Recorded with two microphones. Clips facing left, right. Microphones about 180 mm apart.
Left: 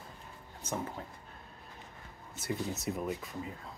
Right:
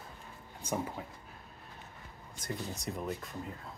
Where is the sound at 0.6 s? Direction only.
10° right (ahead or behind).